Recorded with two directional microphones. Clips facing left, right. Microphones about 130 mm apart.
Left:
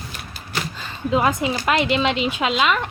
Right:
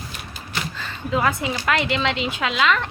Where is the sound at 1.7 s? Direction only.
20° left (ahead or behind).